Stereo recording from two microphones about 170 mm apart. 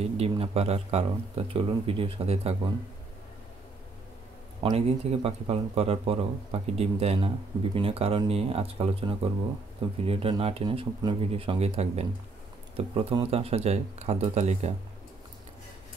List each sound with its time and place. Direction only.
0.0 s speech: 40° right (ahead or behind)
4.7 s speech: 35° right (ahead or behind)